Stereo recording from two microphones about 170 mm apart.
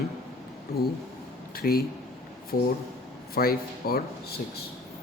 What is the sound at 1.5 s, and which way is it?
Speech, 60° left (ahead or behind).